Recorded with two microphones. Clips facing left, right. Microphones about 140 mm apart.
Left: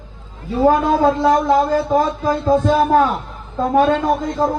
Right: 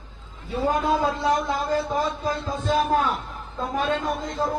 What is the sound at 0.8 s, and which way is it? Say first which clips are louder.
Speech: left 8 dB; 60° left (ahead or behind).